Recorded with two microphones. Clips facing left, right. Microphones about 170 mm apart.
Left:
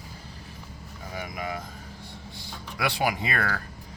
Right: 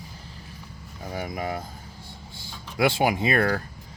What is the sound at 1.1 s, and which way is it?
Speech, 30° right (ahead or behind).